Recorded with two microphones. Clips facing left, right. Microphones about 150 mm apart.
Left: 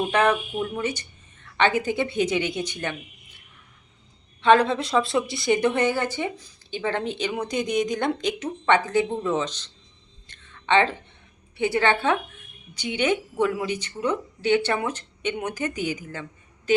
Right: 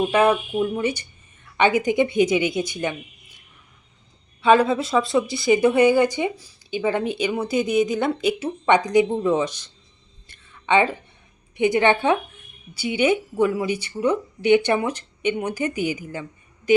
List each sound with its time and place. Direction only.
0.1 s a woman's voice: 10° right (ahead or behind)
4.4 s speech: 5° right (ahead or behind)
10.2 s a sound: 10° right (ahead or behind)
11.5 s speech: 15° right (ahead or behind)